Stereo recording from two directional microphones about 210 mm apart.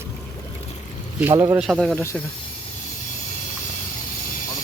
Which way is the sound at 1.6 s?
Centre (ahead or behind).